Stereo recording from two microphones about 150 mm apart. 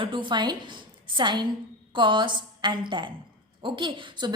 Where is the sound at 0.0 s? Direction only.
35° right (ahead or behind).